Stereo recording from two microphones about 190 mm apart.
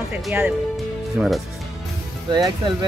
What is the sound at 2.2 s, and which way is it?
Speech, 20° right (ahead or behind).